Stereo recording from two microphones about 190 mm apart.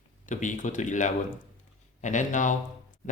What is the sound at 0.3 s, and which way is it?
Speech, 40° left (ahead or behind).